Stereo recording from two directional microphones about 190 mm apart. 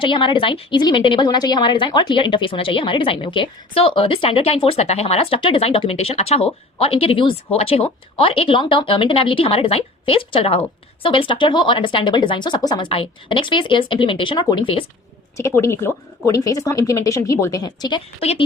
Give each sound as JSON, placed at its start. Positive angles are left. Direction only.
{"t": 0.0, "sound": "a woman's voice", "side_deg": 25}
{"t": 15.4, "sound": "speech", "side_deg": 15}